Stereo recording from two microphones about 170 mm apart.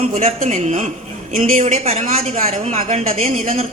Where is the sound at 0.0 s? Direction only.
40° right (ahead or behind).